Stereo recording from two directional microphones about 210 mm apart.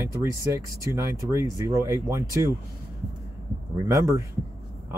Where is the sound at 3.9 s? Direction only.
15° right (ahead or behind).